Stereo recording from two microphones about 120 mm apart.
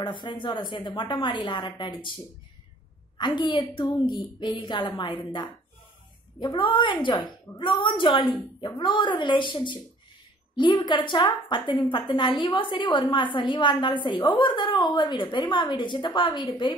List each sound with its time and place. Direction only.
0.0 s a woman's voice: 40° left (ahead or behind)
3.2 s a woman's voice: 40° left (ahead or behind)